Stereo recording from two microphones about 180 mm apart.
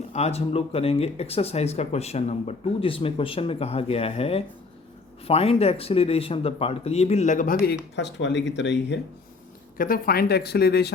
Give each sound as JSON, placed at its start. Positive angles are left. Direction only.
{"t": 0.1, "sound": "speech", "side_deg": 35}
{"t": 9.7, "sound": "speech", "side_deg": 50}